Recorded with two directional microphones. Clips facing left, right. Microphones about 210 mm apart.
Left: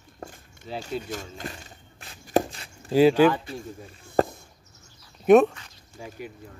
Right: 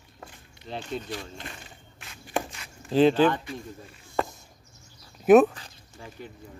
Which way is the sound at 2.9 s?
10° left (ahead or behind).